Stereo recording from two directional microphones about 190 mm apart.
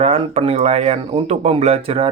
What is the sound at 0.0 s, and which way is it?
Speech, 30° right (ahead or behind).